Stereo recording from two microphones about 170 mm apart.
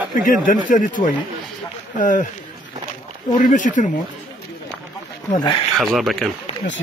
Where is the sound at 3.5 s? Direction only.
50° left (ahead or behind).